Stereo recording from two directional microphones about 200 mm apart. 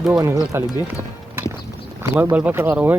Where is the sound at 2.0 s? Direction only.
10° right (ahead or behind).